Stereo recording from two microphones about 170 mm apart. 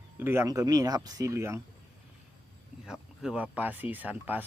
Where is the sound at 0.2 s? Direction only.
15° right (ahead or behind).